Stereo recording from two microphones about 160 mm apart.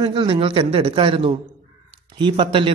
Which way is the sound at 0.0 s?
30° right (ahead or behind).